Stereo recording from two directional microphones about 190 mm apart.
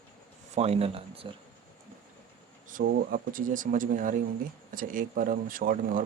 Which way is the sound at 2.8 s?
50° right (ahead or behind).